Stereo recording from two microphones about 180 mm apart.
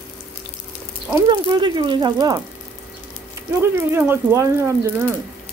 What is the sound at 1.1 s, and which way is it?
Speech, 20° right (ahead or behind).